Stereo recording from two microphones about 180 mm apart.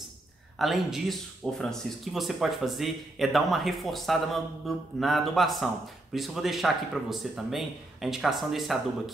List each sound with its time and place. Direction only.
0.6 s speech: centre (ahead or behind)